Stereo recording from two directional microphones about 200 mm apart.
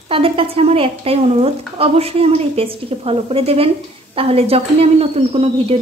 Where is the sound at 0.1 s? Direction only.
25° right (ahead or behind).